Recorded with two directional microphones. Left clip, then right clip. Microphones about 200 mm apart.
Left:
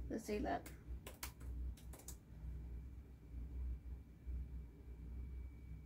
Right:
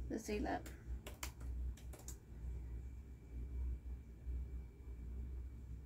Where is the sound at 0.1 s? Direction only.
5° left (ahead or behind).